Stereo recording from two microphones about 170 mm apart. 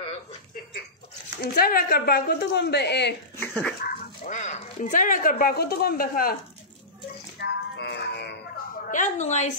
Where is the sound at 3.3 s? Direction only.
10° left (ahead or behind).